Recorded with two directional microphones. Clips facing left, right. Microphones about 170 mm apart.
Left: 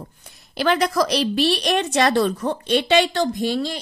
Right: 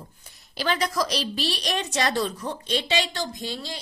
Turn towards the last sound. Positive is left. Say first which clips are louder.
# left 11 dB
turn(degrees=65)  # may be behind; listen again after turning